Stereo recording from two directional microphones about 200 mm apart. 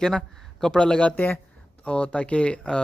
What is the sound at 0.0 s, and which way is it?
Speech, 5° left (ahead or behind).